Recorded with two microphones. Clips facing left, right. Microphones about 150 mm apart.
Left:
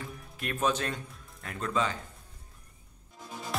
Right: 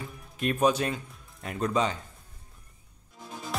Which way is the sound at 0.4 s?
15° right (ahead or behind).